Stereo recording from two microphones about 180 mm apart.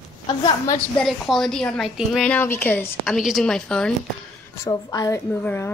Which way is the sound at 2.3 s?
10° left (ahead or behind).